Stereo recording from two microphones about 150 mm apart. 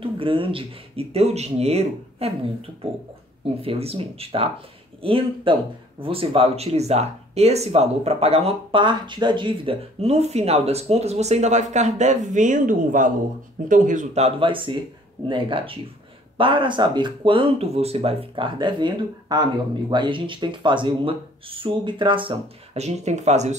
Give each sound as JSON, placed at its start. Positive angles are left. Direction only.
{"t": 0.0, "sound": "speech", "side_deg": -35}
{"t": 3.6, "sound": "speech", "side_deg": -40}